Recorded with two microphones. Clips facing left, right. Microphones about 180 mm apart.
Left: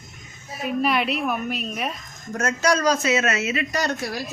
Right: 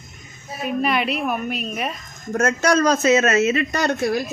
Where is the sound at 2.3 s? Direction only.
50° right (ahead or behind).